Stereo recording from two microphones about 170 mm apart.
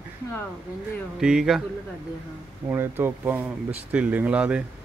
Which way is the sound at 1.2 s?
5° right (ahead or behind).